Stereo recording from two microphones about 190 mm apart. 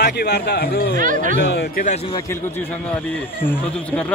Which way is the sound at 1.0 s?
45° right (ahead or behind).